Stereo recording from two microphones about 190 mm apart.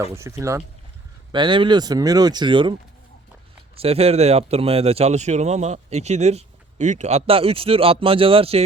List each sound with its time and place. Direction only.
0.0 s speech: 15° right (ahead or behind)
3.8 s speech: 30° right (ahead or behind)